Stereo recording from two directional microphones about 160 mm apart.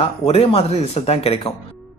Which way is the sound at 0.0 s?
35° left (ahead or behind).